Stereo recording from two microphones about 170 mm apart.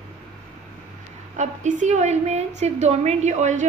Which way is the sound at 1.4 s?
45° right (ahead or behind).